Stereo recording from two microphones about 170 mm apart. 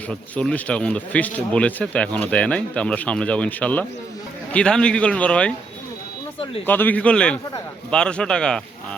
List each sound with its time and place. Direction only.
0.1 s speech: 5° left (ahead or behind)
6.7 s a man's voice: 10° left (ahead or behind)